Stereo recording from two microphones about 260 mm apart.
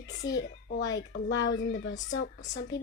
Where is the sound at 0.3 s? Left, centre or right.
Left.